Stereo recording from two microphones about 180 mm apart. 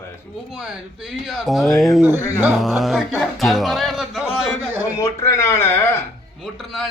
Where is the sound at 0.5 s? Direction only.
5° right (ahead or behind).